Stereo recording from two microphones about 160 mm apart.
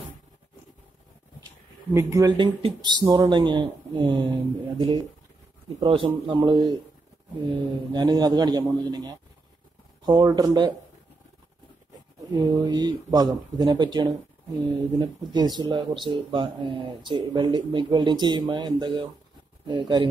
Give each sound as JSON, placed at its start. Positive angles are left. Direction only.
{"t": 2.0, "sound": "a man's voice", "side_deg": -15}
{"t": 7.9, "sound": "speech", "side_deg": -25}
{"t": 12.4, "sound": "speech", "side_deg": -25}